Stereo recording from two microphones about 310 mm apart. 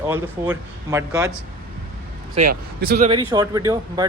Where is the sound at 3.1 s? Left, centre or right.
Centre.